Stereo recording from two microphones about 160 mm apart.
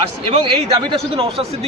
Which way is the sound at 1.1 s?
35° right (ahead or behind).